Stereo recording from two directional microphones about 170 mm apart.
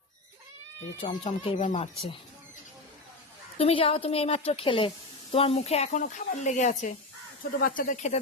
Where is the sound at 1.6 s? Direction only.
45° left (ahead or behind).